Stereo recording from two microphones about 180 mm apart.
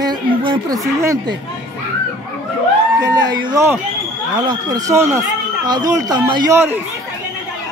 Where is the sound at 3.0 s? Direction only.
20° right (ahead or behind).